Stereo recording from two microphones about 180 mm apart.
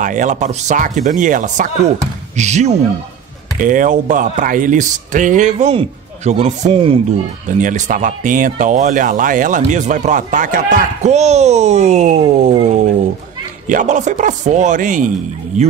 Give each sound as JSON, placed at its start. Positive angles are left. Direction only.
{"t": 0.0, "sound": "speech", "side_deg": -45}
{"t": 7.4, "sound": "speech", "side_deg": -45}
{"t": 13.7, "sound": "speech", "side_deg": -45}